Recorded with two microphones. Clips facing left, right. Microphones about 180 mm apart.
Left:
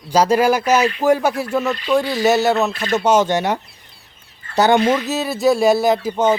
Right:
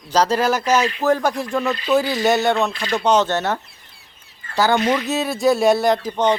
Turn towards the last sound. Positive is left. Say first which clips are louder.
# left 2 dB
turn(degrees=5)  # may be behind; listen again after turning